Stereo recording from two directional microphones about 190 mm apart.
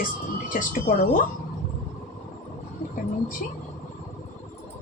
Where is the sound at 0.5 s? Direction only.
45° left (ahead or behind).